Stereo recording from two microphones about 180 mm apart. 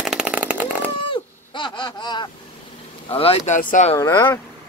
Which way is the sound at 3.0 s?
30° left (ahead or behind).